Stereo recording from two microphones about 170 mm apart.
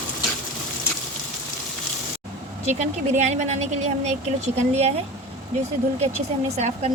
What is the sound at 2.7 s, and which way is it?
Speech, 40° right (ahead or behind).